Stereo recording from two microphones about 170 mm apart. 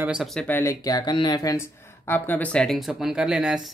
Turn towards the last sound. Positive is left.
turn(degrees=-5)  # may be behind; listen again after turning